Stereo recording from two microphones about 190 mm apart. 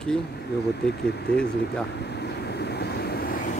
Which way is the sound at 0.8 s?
60° left (ahead or behind).